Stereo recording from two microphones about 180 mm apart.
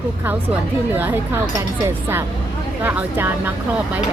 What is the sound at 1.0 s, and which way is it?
Speech, 10° right (ahead or behind).